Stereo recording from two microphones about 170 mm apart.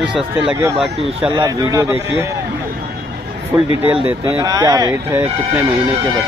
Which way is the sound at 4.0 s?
10° right (ahead or behind).